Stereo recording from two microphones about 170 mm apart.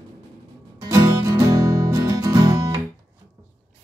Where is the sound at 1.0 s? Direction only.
25° right (ahead or behind).